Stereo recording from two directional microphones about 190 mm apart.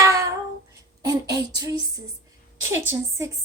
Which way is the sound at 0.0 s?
15° right (ahead or behind).